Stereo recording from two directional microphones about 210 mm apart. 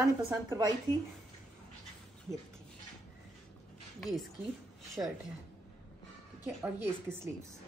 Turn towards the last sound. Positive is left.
turn(degrees=-10)  # may be behind; listen again after turning